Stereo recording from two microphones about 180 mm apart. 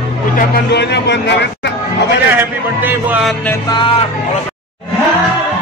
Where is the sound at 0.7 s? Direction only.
70° left (ahead or behind).